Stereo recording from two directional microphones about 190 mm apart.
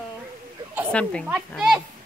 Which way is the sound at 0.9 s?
5° left (ahead or behind).